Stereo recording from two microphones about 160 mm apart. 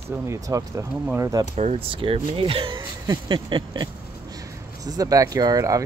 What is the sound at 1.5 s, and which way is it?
Speech, 40° right (ahead or behind).